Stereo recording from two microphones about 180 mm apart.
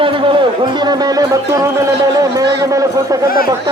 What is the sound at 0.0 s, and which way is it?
Speech, 25° right (ahead or behind).